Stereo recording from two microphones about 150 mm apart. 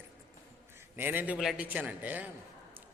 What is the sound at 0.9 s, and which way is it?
A man's voice, 15° right (ahead or behind).